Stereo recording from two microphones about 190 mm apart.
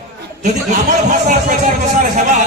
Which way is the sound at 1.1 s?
40° right (ahead or behind).